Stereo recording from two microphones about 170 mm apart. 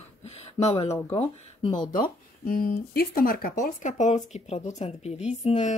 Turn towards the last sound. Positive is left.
turn(degrees=45)  # may be behind; listen again after turning